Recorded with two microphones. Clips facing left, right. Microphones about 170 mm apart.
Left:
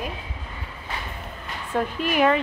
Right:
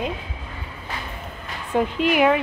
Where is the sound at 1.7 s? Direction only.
15° right (ahead or behind).